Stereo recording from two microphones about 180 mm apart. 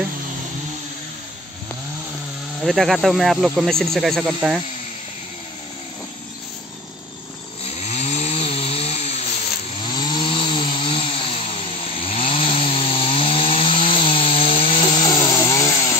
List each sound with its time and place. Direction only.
2.6 s speech: centre (ahead or behind)
7.6 s chainsaw: 35° left (ahead or behind)
9.8 s chainsaw: 25° left (ahead or behind)